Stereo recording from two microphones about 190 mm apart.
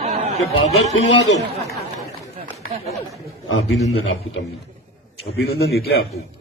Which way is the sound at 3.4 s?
90° left.